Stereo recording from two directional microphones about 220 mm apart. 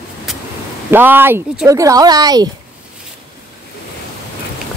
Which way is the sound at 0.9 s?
10° right (ahead or behind).